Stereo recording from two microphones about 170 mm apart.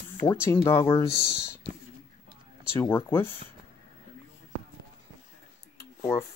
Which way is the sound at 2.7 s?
15° left (ahead or behind).